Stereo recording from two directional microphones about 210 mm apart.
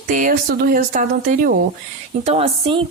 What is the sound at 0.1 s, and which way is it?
Speech, 40° right (ahead or behind).